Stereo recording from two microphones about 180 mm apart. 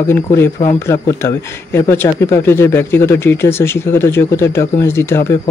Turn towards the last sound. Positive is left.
turn(degrees=15)  # may be behind; listen again after turning